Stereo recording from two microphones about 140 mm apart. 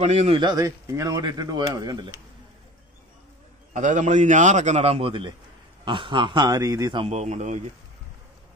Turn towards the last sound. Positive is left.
turn(degrees=-55)  # may be behind; listen again after turning